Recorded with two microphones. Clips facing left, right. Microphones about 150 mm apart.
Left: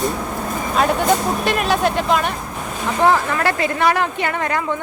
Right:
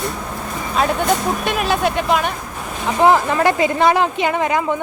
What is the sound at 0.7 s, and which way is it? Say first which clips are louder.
Speech: left 1 dB; centre (ahead or behind).